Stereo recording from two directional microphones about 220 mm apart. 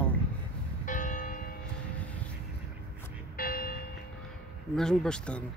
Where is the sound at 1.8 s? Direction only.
5° left (ahead or behind).